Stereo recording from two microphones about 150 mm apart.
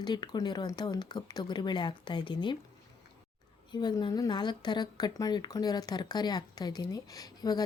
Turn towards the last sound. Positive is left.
turn(degrees=25)  # may be behind; listen again after turning